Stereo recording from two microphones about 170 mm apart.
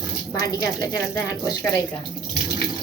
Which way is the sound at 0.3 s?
20° left (ahead or behind).